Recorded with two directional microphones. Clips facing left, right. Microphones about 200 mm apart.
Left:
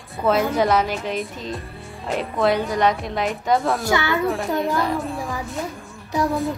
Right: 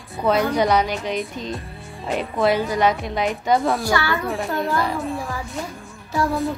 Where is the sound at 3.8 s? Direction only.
20° left (ahead or behind).